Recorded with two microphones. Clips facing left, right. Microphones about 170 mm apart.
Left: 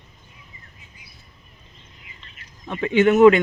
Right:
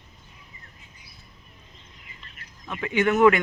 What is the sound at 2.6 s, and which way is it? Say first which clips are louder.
Speech: left 6 dB; 25° left (ahead or behind).